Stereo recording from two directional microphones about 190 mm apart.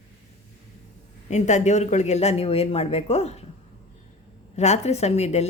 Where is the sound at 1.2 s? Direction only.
40° left (ahead or behind).